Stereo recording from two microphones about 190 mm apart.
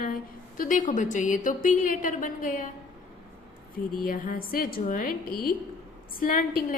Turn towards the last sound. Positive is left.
turn(degrees=50)  # may be behind; listen again after turning